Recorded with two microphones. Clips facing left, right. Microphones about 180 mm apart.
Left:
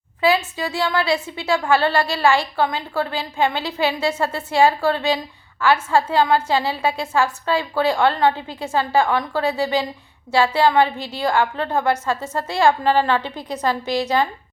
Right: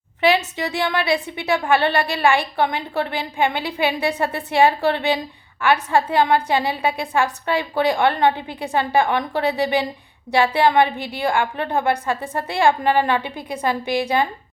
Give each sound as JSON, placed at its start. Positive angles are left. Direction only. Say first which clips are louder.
{"t": 0.2, "sound": "a woman's voice", "louder": "even", "side_deg": -20}